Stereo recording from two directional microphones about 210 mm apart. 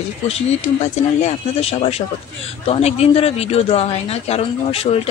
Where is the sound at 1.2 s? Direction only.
30° left (ahead or behind).